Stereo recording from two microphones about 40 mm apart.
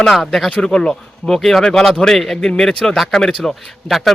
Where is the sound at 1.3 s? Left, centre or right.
Centre.